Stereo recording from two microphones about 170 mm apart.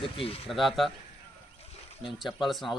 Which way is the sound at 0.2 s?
35° left (ahead or behind).